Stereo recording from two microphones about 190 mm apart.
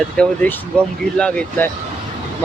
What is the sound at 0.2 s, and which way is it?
Speech, 5° left (ahead or behind).